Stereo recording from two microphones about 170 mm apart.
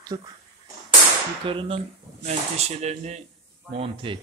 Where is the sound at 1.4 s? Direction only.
30° right (ahead or behind).